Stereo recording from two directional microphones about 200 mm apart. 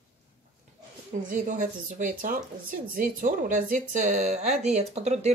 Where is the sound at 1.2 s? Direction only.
40° right (ahead or behind).